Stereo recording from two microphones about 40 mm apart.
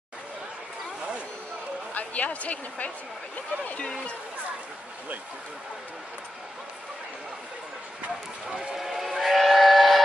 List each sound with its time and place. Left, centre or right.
2.0 s speech: left
8.5 s train: centre